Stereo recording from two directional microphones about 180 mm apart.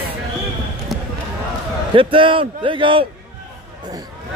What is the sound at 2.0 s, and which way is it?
A man's voice, 30° right (ahead or behind).